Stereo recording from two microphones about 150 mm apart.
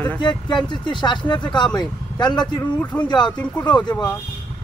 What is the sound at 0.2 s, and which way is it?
Speech, 30° left (ahead or behind).